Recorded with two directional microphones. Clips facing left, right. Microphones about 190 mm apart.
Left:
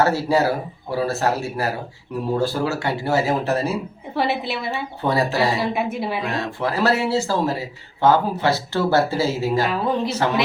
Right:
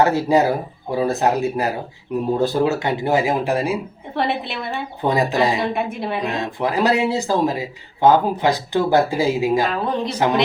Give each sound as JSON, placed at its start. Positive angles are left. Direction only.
{"t": 0.0, "sound": "speech", "side_deg": -20}
{"t": 4.1, "sound": "a woman's voice", "side_deg": 5}
{"t": 5.0, "sound": "speech", "side_deg": -15}
{"t": 5.5, "sound": "a woman's voice", "side_deg": 0}
{"t": 6.2, "sound": "speech", "side_deg": -15}